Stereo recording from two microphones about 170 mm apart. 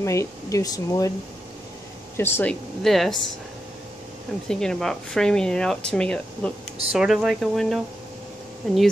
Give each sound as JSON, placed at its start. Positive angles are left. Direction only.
{"t": 0.0, "sound": "speech", "side_deg": 15}
{"t": 2.1, "sound": "speech", "side_deg": 15}
{"t": 2.8, "sound": "speech", "side_deg": 0}
{"t": 4.5, "sound": "speech", "side_deg": 5}
{"t": 6.9, "sound": "speech", "side_deg": -5}